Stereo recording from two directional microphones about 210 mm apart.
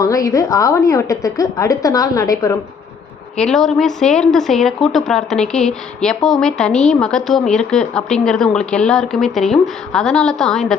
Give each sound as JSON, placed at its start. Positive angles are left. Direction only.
{"t": 0.0, "sound": "a woman's voice", "side_deg": 15}
{"t": 3.3, "sound": "a woman's voice", "side_deg": 0}